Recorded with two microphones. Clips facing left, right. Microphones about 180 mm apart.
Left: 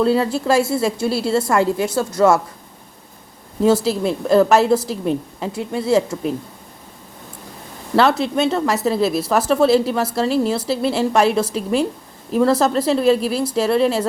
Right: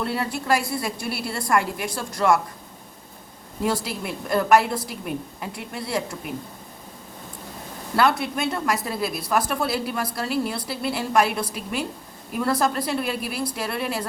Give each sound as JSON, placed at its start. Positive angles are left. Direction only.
{"t": 0.0, "sound": "a woman's voice", "side_deg": 25}
{"t": 3.6, "sound": "a woman's voice", "side_deg": 25}
{"t": 7.9, "sound": "a woman's voice", "side_deg": 25}